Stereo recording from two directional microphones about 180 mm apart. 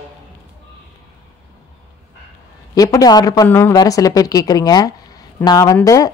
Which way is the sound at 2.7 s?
20° left (ahead or behind).